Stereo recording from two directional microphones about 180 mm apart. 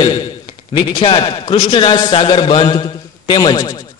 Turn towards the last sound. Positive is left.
turn(degrees=25)  # may be behind; listen again after turning